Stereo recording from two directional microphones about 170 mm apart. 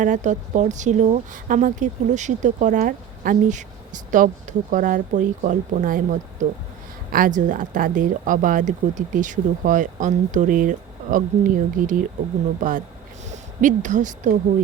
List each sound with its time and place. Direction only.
0.0 s speech: 45° right (ahead or behind)